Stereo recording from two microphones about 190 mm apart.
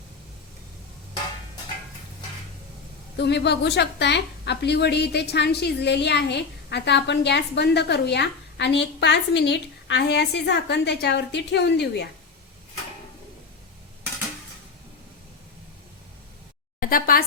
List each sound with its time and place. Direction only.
3.2 s a woman's voice: 65° left (ahead or behind)
16.8 s a woman's voice: 50° left (ahead or behind)